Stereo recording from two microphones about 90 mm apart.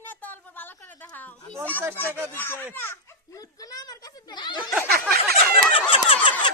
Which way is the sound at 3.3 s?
40° left (ahead or behind).